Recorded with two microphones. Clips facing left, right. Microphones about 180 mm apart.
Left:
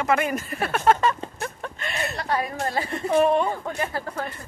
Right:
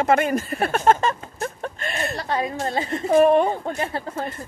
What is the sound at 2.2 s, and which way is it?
Speech, 25° right (ahead or behind).